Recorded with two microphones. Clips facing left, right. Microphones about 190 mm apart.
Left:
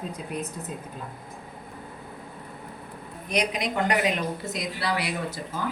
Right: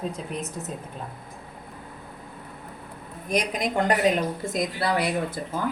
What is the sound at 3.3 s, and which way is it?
A woman's voice, 45° right (ahead or behind).